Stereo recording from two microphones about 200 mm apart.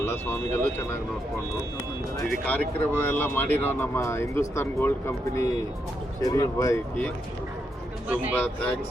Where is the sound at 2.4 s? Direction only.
10° left (ahead or behind).